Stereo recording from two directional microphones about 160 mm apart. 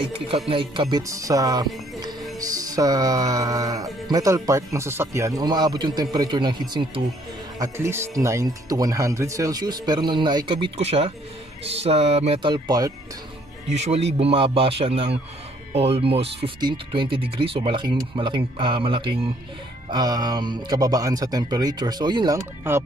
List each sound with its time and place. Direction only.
0.0 s speech: 35° right (ahead or behind)
13.7 s speech: 45° right (ahead or behind); by 22.4 s 25° right (ahead or behind)